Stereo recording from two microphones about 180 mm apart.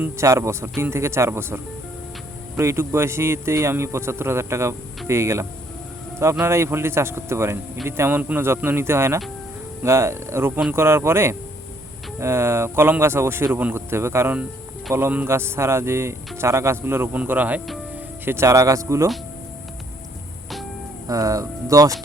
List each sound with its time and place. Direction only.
0.0 s a man's voice: 15° right (ahead or behind)
21.1 s speech: 20° right (ahead or behind)